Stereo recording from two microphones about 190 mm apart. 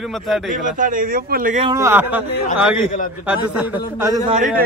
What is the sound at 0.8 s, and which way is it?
Speech, 45° right (ahead or behind).